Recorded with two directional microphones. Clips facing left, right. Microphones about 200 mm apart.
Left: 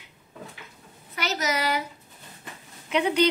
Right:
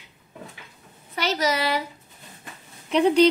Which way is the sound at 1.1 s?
30° right (ahead or behind).